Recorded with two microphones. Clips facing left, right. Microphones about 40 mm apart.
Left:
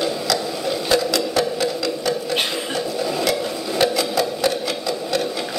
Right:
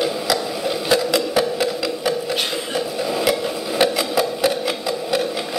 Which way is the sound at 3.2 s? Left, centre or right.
Centre.